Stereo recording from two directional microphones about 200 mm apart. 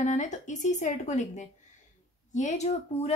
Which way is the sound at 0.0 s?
40° left (ahead or behind).